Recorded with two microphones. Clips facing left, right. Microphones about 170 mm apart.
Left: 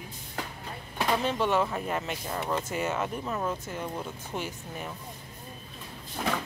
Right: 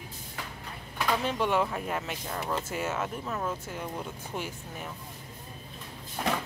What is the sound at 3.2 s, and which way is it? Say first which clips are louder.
Speech: left 2 dB; 5° left (ahead or behind).